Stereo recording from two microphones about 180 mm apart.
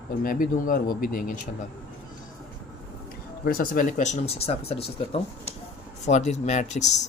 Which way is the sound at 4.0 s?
35° left (ahead or behind).